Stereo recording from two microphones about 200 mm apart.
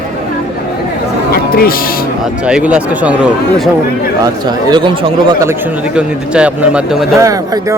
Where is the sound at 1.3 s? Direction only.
50° left (ahead or behind).